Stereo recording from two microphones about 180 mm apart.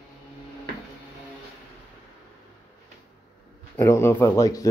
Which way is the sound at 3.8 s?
15° left (ahead or behind).